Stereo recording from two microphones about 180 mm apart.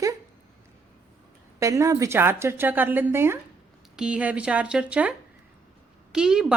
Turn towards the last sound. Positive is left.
turn(degrees=-5)  # may be behind; listen again after turning